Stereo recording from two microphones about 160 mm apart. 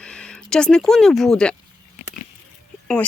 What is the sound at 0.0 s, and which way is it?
Speech, 5° left (ahead or behind).